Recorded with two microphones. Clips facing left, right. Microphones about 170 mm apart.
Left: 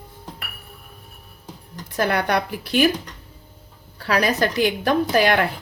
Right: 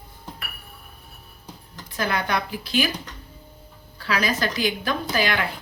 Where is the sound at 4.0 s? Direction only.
55° left (ahead or behind).